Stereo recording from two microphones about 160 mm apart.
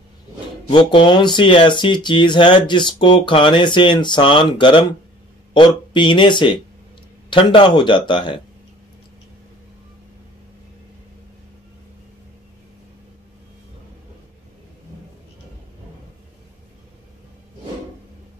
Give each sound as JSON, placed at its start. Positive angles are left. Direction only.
{"t": 0.7, "sound": "a man's voice", "side_deg": 30}